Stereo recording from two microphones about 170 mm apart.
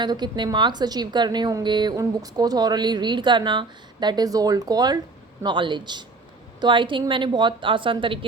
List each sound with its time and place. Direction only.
0.0 s a woman's voice: 25° right (ahead or behind)